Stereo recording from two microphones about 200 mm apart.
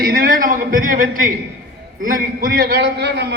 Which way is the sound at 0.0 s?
45° right (ahead or behind).